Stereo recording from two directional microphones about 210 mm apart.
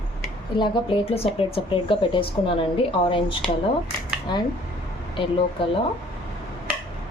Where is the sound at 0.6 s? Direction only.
25° left (ahead or behind).